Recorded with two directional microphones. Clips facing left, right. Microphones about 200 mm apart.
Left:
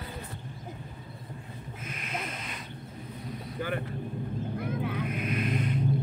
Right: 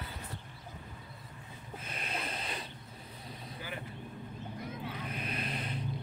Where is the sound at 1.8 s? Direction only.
35° right (ahead or behind).